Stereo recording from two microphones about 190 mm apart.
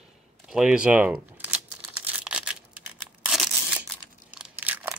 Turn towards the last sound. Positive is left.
turn(degrees=-10)  # may be behind; listen again after turning